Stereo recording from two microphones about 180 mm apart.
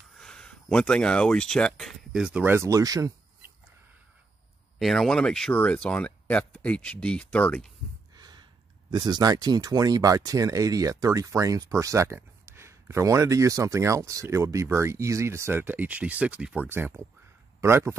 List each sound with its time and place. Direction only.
0.2 s speech: 5° left (ahead or behind); by 3.1 s 20° right (ahead or behind)
4.7 s speech: centre (ahead or behind)
8.2 s a sound: 25° right (ahead or behind)
8.9 s a man's voice: 25° right (ahead or behind)